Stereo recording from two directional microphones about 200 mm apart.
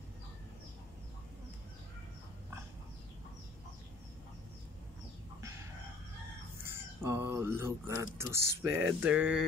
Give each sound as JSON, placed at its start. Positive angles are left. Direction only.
{"t": 6.6, "sound": "speech", "side_deg": -10}